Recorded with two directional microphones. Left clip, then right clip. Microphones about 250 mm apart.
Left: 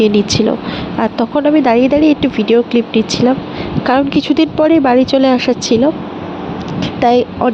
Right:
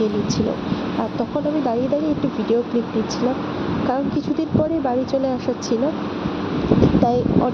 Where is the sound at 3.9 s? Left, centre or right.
Left.